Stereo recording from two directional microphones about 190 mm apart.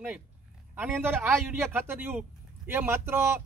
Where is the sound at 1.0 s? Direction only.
10° right (ahead or behind).